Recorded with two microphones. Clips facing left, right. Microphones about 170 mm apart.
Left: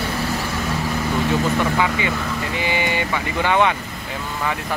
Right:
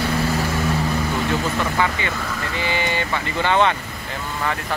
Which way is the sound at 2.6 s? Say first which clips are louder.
Even; 15° left (ahead or behind).